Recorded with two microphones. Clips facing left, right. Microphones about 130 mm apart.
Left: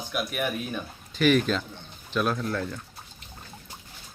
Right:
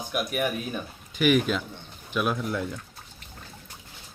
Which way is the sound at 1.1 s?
10° right (ahead or behind).